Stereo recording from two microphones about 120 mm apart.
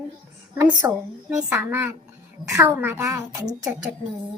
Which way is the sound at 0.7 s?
35° right (ahead or behind).